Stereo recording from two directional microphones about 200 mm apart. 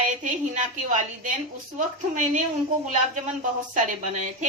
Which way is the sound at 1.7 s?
40° right (ahead or behind).